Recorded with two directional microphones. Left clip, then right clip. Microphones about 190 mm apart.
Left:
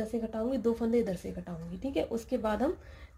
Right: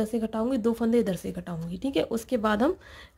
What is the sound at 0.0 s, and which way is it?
Speech, 35° right (ahead or behind).